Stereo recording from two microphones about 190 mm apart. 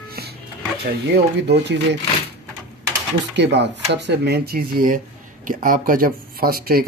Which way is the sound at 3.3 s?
65° right (ahead or behind).